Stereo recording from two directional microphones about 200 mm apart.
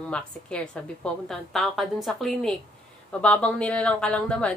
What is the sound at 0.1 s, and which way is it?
Speech, 5° left (ahead or behind).